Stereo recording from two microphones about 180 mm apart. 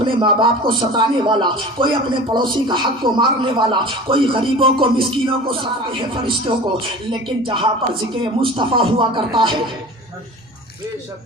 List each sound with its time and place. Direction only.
0.0 s speech: 25° right (ahead or behind)